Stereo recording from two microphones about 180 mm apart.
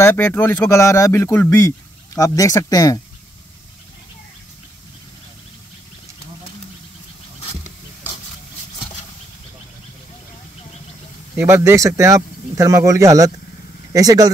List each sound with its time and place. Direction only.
0.0 s speech: 10° left (ahead or behind)
11.3 s speech: 15° right (ahead or behind)